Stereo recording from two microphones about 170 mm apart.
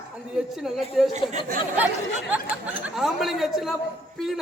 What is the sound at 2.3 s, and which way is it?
Speech, 5° right (ahead or behind).